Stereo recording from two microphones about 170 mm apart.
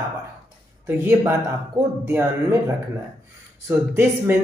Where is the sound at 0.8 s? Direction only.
15° right (ahead or behind).